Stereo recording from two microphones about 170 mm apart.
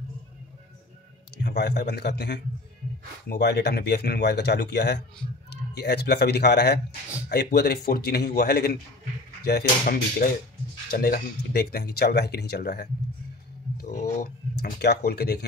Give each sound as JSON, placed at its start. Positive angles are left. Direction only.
{"t": 1.4, "sound": "speech", "side_deg": 80}
{"t": 13.7, "sound": "speech", "side_deg": 50}
{"t": 14.6, "sound": "speech", "side_deg": 75}